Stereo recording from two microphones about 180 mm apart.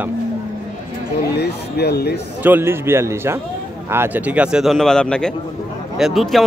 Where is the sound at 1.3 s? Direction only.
65° left (ahead or behind).